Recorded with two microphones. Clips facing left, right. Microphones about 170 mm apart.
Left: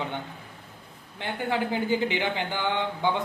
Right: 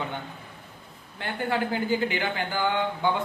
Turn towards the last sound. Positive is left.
turn(degrees=20)  # may be behind; listen again after turning